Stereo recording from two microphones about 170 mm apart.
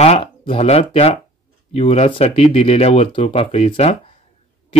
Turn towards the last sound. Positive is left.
turn(degrees=40)  # may be behind; listen again after turning